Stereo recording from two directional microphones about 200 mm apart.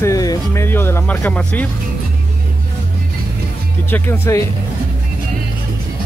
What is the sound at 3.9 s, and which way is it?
Speech, 10° left (ahead or behind).